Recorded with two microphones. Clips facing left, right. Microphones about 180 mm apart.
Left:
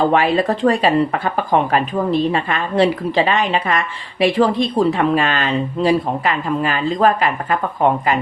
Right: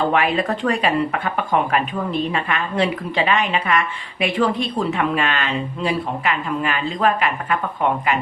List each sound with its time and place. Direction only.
0.1 s speech: 35° left (ahead or behind)